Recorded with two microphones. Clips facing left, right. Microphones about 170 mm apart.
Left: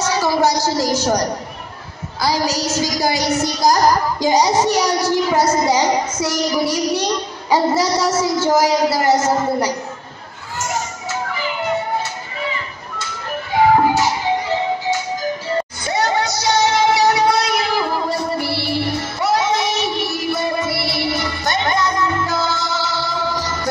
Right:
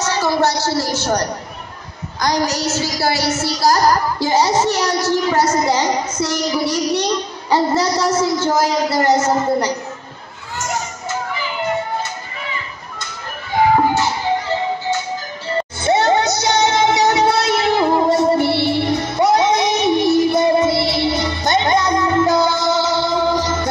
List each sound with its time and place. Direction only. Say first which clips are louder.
0.2 s a child's voice: even; 10° left (ahead or behind)
2.2 s a child's voice: right 1 dB; 10° left (ahead or behind)
15.8 s music: right 7 dB; 25° right (ahead or behind)